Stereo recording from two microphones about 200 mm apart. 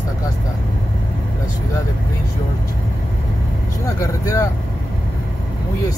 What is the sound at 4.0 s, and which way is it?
Speech, 15° left (ahead or behind).